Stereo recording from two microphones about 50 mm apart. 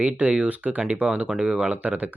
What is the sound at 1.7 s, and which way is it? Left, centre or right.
Speech, right.